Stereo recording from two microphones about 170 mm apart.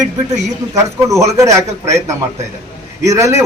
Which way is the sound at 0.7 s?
15° right (ahead or behind).